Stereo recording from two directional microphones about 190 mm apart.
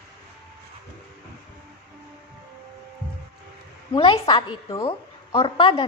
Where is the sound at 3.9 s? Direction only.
25° left (ahead or behind).